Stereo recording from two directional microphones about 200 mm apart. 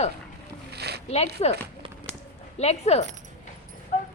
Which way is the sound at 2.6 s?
30° left (ahead or behind).